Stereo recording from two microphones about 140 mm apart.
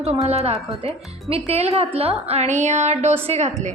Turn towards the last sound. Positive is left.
turn(degrees=-50)  # may be behind; listen again after turning